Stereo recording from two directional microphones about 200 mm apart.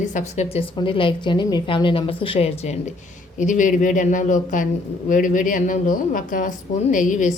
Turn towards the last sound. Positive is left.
turn(degrees=40)  # may be behind; listen again after turning